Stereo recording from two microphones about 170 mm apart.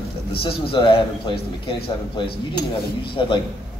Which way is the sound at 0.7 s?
30° left (ahead or behind).